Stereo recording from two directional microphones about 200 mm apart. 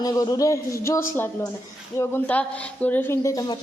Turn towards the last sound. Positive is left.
turn(degrees=15)  # may be behind; listen again after turning